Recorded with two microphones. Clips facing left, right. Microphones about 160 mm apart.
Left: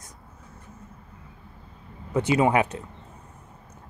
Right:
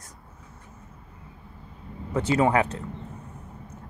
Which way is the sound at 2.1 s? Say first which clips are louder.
Left 1 dB; 15° left (ahead or behind).